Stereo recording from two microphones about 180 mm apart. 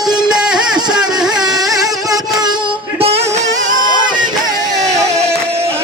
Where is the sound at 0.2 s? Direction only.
5° right (ahead or behind).